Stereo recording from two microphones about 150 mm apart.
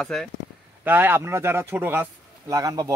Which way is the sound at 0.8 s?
15° right (ahead or behind).